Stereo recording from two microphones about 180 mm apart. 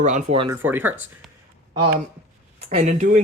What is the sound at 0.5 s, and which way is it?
Speech, 10° right (ahead or behind).